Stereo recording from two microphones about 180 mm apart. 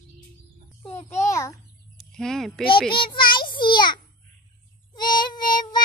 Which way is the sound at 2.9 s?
25° left (ahead or behind).